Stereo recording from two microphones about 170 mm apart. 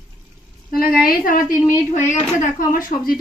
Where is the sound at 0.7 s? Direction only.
60° left (ahead or behind).